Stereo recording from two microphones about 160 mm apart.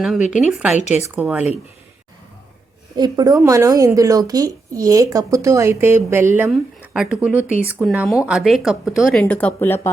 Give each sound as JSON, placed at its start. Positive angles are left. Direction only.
{"t": 0.0, "sound": "speech", "side_deg": -5}
{"t": 2.9, "sound": "a woman's voice", "side_deg": -25}